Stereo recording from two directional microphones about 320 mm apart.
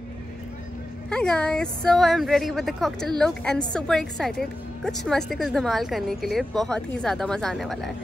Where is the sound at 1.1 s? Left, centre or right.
Centre.